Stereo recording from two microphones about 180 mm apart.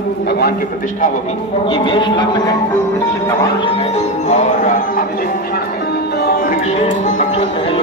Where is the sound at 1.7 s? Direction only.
25° left (ahead or behind).